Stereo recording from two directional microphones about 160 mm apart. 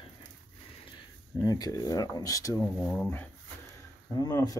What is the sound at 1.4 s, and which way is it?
Speech, 20° left (ahead or behind).